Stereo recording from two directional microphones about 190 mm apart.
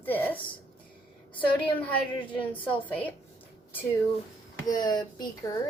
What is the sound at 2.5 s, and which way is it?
Speech, 10° left (ahead or behind).